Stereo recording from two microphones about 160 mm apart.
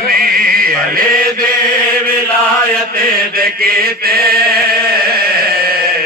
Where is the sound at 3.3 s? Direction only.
70° right (ahead or behind).